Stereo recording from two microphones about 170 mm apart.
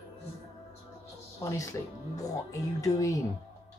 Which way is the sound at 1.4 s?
15° left (ahead or behind).